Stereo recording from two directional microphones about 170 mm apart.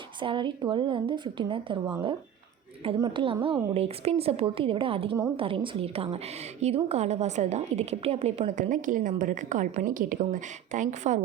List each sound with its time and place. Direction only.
0.2 s a woman's voice: 30° right (ahead or behind); by 11.2 s 45° right (ahead or behind)